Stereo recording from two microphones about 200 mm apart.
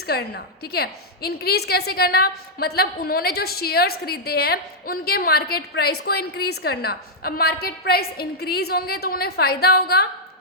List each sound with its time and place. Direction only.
0.0 s a woman's voice: 50° left (ahead or behind)